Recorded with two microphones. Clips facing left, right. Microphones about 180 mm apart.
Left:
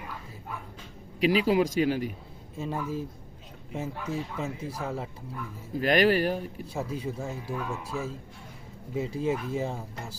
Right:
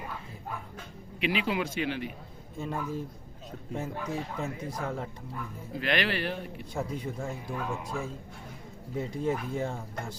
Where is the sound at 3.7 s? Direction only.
5° left (ahead or behind).